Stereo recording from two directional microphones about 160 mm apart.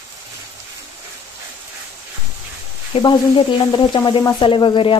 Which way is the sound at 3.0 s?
30° left (ahead or behind).